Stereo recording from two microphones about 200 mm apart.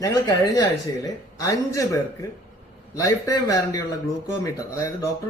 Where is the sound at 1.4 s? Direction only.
15° left (ahead or behind).